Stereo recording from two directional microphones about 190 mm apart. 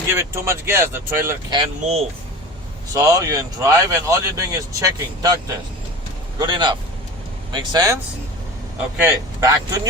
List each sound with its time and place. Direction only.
0.1 s speech: 15° right (ahead or behind)
1.5 s speech: 35° right (ahead or behind)
2.9 s speech: 20° right (ahead or behind)
6.4 s speech: 25° right (ahead or behind)
9.0 s speech: 15° right (ahead or behind)